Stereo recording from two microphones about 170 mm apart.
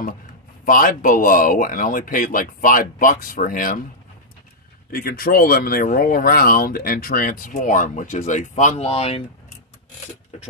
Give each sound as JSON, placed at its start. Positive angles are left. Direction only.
{"t": 0.7, "sound": "speech", "side_deg": 55}
{"t": 4.9, "sound": "speech", "side_deg": 60}